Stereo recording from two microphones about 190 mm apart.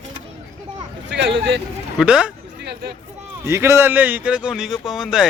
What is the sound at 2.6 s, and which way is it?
Speech, 60° right (ahead or behind).